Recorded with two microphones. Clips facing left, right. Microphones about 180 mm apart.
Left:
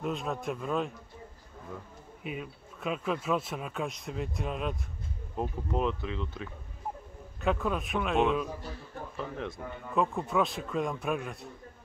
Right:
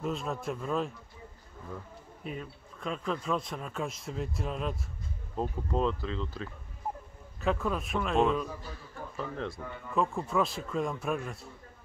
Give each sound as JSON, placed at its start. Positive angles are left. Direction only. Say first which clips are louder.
{"t": 0.0, "sound": "speech", "louder": "left 1 dB", "side_deg": 0}
{"t": 2.2, "sound": "speech", "louder": "left 1 dB", "side_deg": 5}
{"t": 5.3, "sound": "speech", "louder": "right 1 dB", "side_deg": 15}
{"t": 7.3, "sound": "speech", "louder": "left 1 dB", "side_deg": 0}
{"t": 9.1, "sound": "a man's voice", "louder": "right 1 dB", "side_deg": 15}
{"t": 9.9, "sound": "speech", "louder": "left 1 dB", "side_deg": 0}